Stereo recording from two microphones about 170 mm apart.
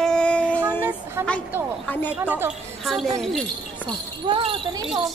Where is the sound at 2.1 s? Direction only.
10° right (ahead or behind).